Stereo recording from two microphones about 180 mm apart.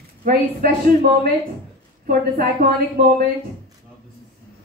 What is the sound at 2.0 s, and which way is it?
A woman's voice, 50° right (ahead or behind).